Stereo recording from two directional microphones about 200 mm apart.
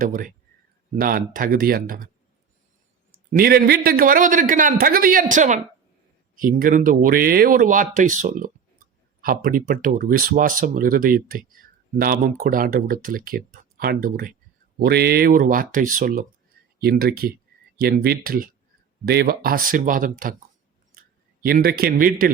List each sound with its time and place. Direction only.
0.0 s speech: 40° right (ahead or behind)
3.3 s speech: 50° right (ahead or behind)
21.4 s speech: 50° right (ahead or behind)